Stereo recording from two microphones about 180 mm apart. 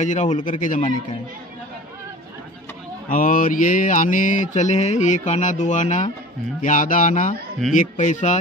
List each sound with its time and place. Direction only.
0.0 s mantra: 40° left (ahead or behind)
3.1 s mantra: 50° left (ahead or behind)